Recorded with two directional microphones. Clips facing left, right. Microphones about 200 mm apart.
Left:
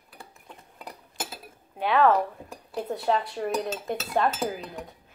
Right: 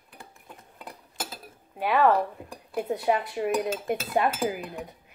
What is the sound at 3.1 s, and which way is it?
Dishes, 15° right (ahead or behind).